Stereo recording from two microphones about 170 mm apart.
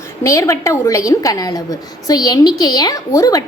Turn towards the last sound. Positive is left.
turn(degrees=20)  # may be behind; listen again after turning